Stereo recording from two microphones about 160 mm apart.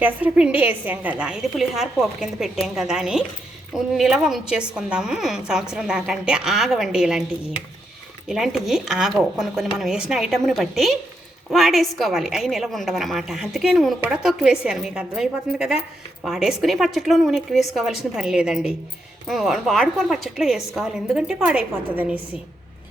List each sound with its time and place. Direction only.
0.0 s a woman's voice: 10° right (ahead or behind)
8.3 s a woman's voice: centre (ahead or behind)